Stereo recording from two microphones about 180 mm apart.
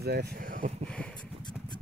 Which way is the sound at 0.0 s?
65° right (ahead or behind).